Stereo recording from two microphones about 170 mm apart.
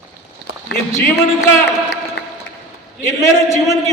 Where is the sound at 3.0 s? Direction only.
15° left (ahead or behind).